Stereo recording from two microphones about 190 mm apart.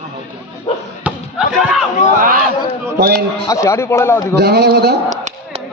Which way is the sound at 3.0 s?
60° right (ahead or behind).